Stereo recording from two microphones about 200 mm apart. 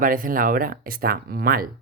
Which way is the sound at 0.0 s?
45° right (ahead or behind).